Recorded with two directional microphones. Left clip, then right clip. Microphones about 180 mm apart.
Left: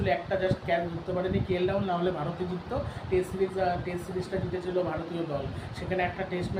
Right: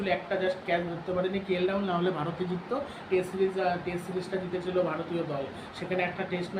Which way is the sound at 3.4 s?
10° left (ahead or behind).